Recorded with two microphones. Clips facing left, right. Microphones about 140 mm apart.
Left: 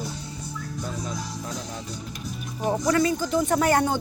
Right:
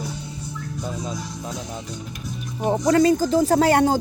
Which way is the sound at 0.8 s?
20° right (ahead or behind).